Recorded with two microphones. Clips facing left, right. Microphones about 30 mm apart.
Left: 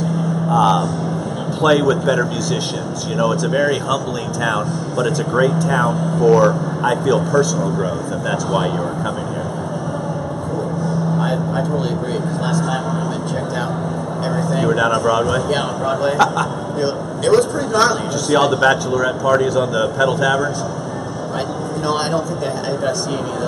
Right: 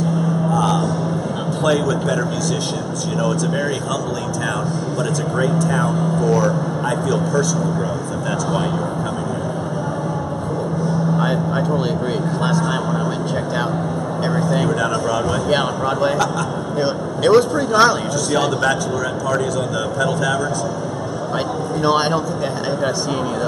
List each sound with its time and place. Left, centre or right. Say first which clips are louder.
0.5 s a sound: left 6 dB; centre
1.6 s speech: left 4 dB; centre
5.0 s speech: left 5 dB; centre
11.1 s vehicle: even; centre
12.4 s speech: right 1 dB; centre
14.2 s speech: even; centre
14.7 s speech: left 4 dB; centre
15.5 s speech: right 1 dB; centre
18.3 s speech: left 5 dB; centre
21.8 s speech: right 2 dB; centre